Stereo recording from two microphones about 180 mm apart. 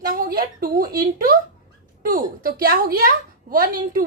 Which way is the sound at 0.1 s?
55° right (ahead or behind).